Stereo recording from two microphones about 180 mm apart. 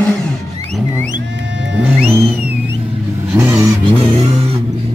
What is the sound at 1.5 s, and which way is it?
Music, 85° right.